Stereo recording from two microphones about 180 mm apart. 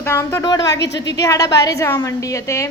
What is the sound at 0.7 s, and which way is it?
Speech, 75° left (ahead or behind).